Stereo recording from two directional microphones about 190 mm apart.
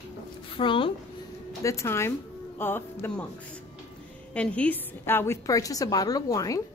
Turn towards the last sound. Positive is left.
turn(degrees=15)  # may be behind; listen again after turning